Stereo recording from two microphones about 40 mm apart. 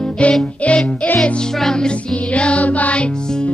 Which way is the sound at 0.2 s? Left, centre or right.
Left.